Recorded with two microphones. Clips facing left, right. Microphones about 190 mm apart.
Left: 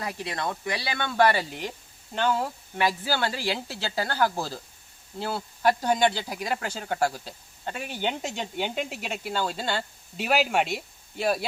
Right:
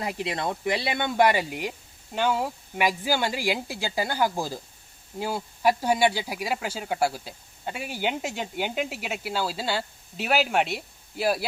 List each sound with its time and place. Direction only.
0.0 s speech: 20° right (ahead or behind); by 11.4 s 5° right (ahead or behind)